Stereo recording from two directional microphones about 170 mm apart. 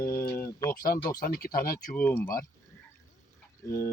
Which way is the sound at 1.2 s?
60° left (ahead or behind).